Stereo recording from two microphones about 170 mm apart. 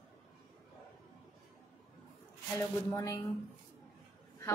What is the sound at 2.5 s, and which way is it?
Speech, 20° left (ahead or behind).